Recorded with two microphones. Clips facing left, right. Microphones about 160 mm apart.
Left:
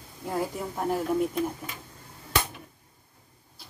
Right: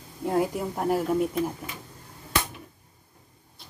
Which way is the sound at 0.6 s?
5° right (ahead or behind).